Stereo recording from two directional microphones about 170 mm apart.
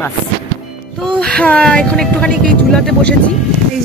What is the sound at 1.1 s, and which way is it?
Speech, 5° left (ahead or behind).